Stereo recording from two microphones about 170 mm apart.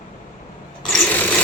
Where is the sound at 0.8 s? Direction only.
5° left (ahead or behind).